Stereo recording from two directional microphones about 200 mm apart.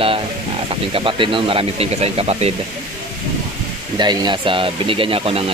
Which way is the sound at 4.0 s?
20° right (ahead or behind).